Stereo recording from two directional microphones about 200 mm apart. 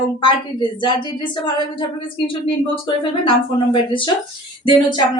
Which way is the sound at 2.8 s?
25° left (ahead or behind).